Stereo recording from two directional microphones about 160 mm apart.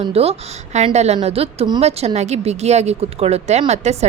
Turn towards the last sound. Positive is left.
turn(degrees=-45)  # may be behind; listen again after turning